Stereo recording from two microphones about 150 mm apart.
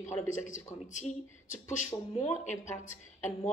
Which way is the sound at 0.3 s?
55° left (ahead or behind).